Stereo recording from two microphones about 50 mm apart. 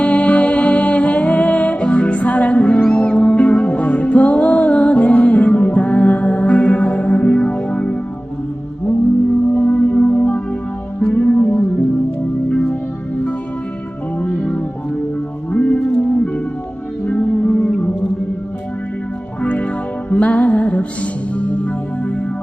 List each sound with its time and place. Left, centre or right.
0.0 s music: left
9.6 s music: left
12.5 s music: centre
14.2 s music: left
19.4 s music: left